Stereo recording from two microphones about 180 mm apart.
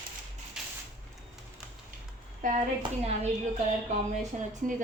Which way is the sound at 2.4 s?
50° right (ahead or behind).